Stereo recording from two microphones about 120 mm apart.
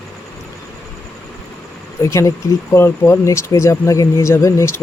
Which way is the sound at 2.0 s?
25° left (ahead or behind).